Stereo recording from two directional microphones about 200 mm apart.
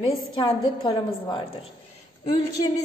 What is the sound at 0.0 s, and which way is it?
A woman's voice, 25° left (ahead or behind).